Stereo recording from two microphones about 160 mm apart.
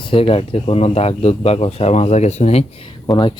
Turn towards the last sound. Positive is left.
turn(degrees=30)  # may be behind; listen again after turning